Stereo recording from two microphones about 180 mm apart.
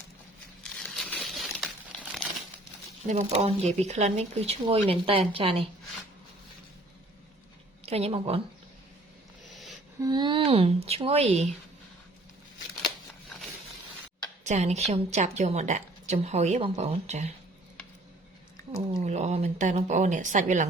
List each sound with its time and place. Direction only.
0.6 s a sound: centre (ahead or behind)
3.1 s a woman's voice: 35° right (ahead or behind)
7.9 s a woman's voice: 35° right (ahead or behind)
9.4 s a sound: centre (ahead or behind)
10.0 s a woman's voice: 25° right (ahead or behind)
14.4 s a woman's voice: 40° right (ahead or behind)
18.9 s a woman's voice: 35° right (ahead or behind)